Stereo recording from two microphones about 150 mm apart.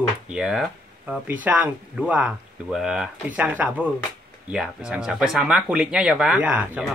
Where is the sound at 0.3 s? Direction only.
Centre (ahead or behind).